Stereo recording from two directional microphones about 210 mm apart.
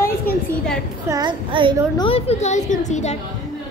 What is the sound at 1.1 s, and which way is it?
Child singing, 20° right (ahead or behind).